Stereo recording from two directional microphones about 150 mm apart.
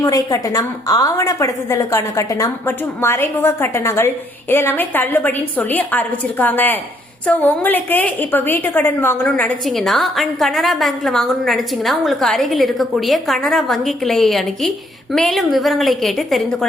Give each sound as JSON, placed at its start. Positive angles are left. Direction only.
{"t": 0.0, "sound": "a woman's voice", "side_deg": 25}